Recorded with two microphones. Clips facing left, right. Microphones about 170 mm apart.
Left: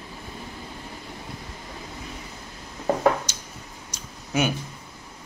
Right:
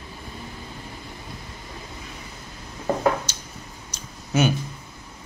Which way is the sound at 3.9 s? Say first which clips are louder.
Right 2 dB; 10° left (ahead or behind).